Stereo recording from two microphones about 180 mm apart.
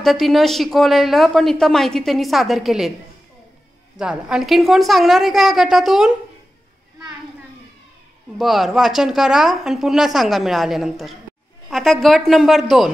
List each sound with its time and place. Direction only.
0.0 s speech: centre (ahead or behind)
4.0 s speech: 5° right (ahead or behind)
8.4 s speech: centre (ahead or behind)